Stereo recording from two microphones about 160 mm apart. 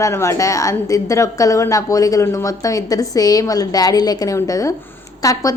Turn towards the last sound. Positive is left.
turn(degrees=20)  # may be behind; listen again after turning